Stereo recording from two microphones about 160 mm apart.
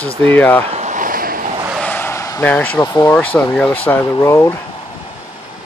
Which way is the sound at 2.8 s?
20° left (ahead or behind).